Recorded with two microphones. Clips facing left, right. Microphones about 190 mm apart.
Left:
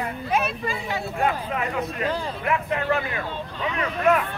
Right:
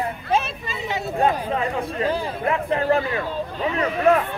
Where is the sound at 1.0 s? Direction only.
35° right (ahead or behind).